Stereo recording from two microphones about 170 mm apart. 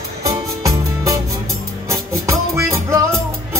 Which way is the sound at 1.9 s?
15° right (ahead or behind).